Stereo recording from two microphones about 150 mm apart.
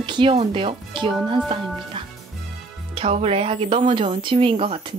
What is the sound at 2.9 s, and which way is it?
Speech, 40° right (ahead or behind).